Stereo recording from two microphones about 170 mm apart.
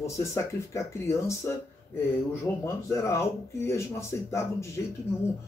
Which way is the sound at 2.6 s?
15° left (ahead or behind).